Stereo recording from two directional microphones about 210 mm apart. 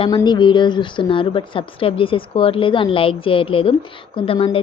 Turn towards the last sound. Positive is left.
turn(degrees=25)  # may be behind; listen again after turning